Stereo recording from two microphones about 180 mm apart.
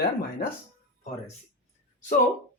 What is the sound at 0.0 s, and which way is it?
Speech, 60° left (ahead or behind).